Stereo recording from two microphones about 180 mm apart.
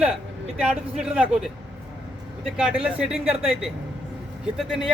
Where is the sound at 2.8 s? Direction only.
5° right (ahead or behind).